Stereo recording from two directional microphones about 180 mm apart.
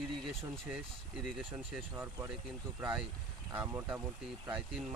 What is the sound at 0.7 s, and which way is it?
Speech, centre (ahead or behind).